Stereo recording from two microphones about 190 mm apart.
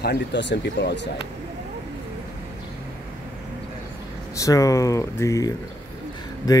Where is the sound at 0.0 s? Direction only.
60° left (ahead or behind).